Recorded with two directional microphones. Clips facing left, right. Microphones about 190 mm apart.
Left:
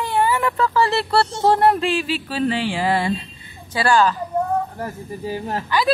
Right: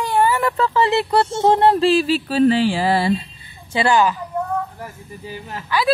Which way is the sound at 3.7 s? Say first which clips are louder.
Right 1 dB; 20° right (ahead or behind).